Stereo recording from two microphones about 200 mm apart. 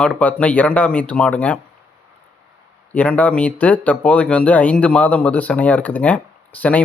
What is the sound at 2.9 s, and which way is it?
Speech, 5° left (ahead or behind).